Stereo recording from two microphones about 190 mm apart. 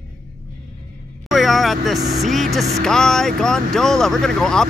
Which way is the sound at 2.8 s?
5° left (ahead or behind).